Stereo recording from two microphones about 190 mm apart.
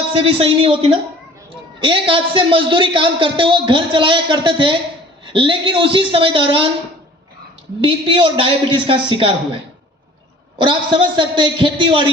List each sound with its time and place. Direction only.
0.1 s a man's voice: 30° right (ahead or behind)
7.8 s a man's voice: 25° right (ahead or behind)
10.6 s a man's voice: 25° right (ahead or behind)